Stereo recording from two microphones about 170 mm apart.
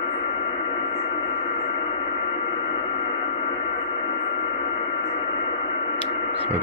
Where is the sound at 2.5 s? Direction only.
35° left (ahead or behind).